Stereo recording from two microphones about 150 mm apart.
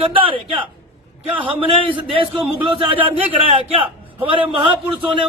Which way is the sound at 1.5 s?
35° right (ahead or behind).